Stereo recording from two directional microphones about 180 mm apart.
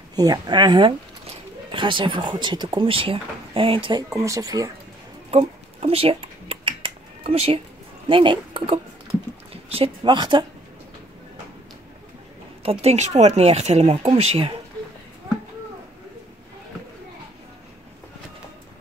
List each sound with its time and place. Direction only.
0.1 s speech: 20° right (ahead or behind)
5.3 s a sound: 35° right (ahead or behind)
8.1 s a woman's voice: 30° right (ahead or behind)
12.6 s speech: 35° right (ahead or behind)